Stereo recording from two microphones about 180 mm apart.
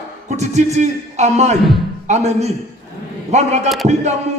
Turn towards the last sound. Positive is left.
turn(degrees=-40)  # may be behind; listen again after turning